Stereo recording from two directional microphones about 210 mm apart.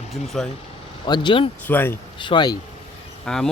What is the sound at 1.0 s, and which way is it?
Speech, 20° left (ahead or behind).